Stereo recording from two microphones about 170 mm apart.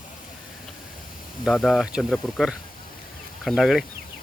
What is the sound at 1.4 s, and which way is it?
Speech, centre (ahead or behind).